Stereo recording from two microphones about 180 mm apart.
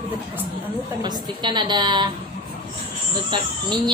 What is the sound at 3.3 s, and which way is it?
Speech, 25° right (ahead or behind).